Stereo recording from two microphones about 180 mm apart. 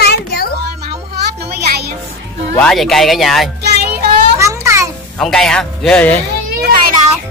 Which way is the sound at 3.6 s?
65° right (ahead or behind).